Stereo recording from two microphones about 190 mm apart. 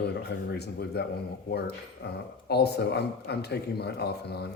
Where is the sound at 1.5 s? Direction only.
55° left (ahead or behind).